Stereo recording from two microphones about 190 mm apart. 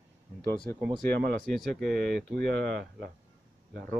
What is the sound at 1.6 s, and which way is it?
Speech, 5° left (ahead or behind).